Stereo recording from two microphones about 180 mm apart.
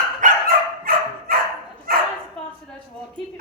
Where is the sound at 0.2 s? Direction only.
50° right (ahead or behind).